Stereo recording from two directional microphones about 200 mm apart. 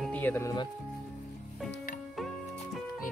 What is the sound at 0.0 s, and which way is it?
Speech, 10° left (ahead or behind).